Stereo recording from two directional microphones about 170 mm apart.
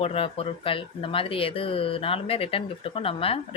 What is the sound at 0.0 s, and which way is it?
Speech, 35° left (ahead or behind).